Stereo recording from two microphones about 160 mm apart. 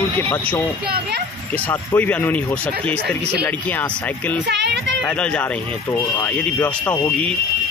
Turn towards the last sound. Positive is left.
turn(degrees=10)  # may be behind; listen again after turning